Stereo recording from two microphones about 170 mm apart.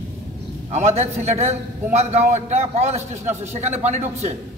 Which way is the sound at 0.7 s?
40° right (ahead or behind).